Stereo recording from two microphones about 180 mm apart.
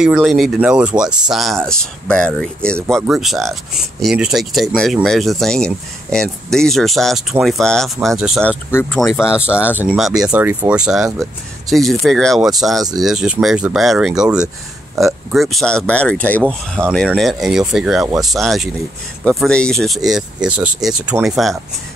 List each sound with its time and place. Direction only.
0.0 s speech: 5° right (ahead or behind)
9.8 s speech: centre (ahead or behind)